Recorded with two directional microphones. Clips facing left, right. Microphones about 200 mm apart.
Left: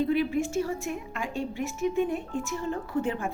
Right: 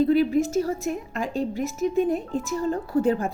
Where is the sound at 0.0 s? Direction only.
40° right (ahead or behind).